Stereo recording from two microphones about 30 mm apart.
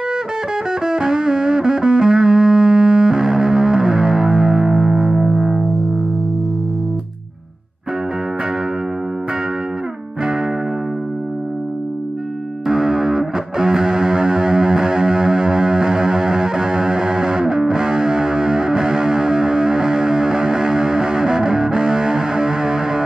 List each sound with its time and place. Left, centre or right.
1.0 s music: centre
4.7 s music: centre
12.6 s music: centre